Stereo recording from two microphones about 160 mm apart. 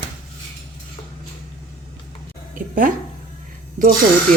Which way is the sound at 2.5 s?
55° right (ahead or behind).